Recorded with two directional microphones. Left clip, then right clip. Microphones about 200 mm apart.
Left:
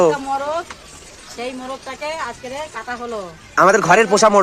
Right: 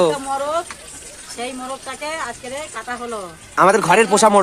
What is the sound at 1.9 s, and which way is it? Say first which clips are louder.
Speech: left 1 dB; 20° right (ahead or behind).